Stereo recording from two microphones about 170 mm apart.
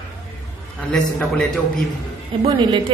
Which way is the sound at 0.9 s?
5° left (ahead or behind).